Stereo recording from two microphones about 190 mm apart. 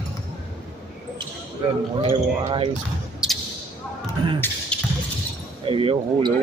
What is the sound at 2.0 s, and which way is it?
Speech, 30° right (ahead or behind).